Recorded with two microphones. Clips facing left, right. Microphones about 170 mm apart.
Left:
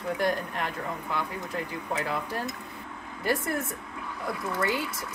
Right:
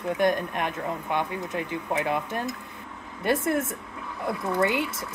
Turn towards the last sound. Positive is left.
turn(degrees=-25)  # may be behind; listen again after turning